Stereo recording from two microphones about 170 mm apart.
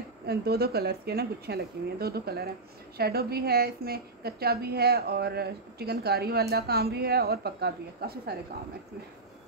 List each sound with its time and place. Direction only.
0.3 s a woman's voice: 70° right (ahead or behind)